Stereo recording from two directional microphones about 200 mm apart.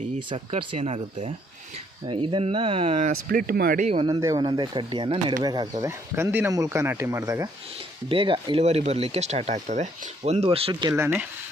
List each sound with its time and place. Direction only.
0.2 s speech: 25° right (ahead or behind)
3.2 s speech: 45° right (ahead or behind)
3.8 s speech: 25° right (ahead or behind)